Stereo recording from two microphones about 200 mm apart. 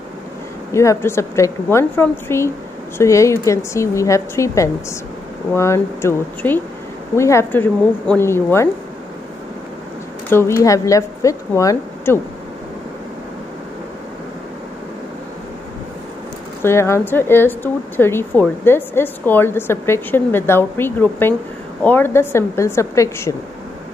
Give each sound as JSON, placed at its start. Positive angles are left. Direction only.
{"t": 0.7, "sound": "a woman's voice", "side_deg": 15}
{"t": 10.3, "sound": "a woman's voice", "side_deg": 10}
{"t": 16.6, "sound": "a woman's voice", "side_deg": 15}